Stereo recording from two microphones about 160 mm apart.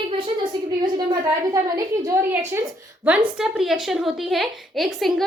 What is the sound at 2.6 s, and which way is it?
A woman's voice, 10° right (ahead or behind).